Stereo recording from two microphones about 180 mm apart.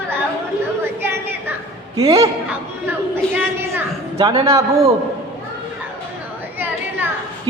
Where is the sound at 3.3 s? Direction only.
15° right (ahead or behind).